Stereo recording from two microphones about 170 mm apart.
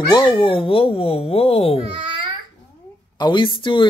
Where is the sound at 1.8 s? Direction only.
30° right (ahead or behind).